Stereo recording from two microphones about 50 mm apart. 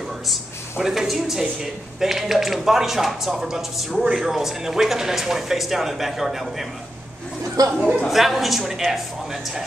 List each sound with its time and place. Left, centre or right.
0.3 s speech: centre
7.7 s a woman's voice: right
8.1 s a man's voice: centre